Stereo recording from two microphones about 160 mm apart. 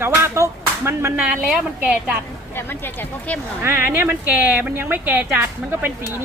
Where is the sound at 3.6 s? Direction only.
15° right (ahead or behind).